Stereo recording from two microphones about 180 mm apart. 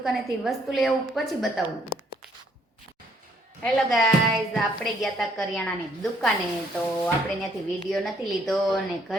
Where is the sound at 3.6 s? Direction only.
Centre (ahead or behind).